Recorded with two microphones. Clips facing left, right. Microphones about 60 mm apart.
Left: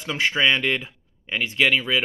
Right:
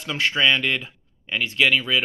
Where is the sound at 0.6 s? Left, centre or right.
Left.